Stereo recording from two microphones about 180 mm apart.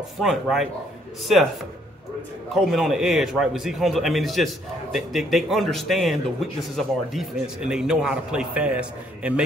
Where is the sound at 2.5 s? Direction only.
Centre (ahead or behind).